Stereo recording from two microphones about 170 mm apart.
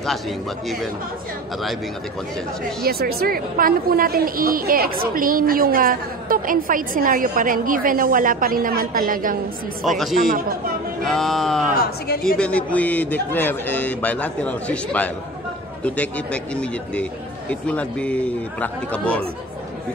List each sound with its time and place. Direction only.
2.8 s a woman's voice: 65° right (ahead or behind)
9.8 s music: centre (ahead or behind)
12.4 s a man's voice: 5° left (ahead or behind)